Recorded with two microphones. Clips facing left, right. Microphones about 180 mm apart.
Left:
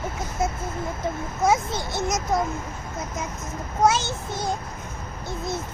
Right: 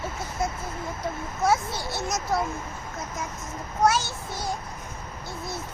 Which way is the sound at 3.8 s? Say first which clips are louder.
Left 2 dB; 20° left (ahead or behind).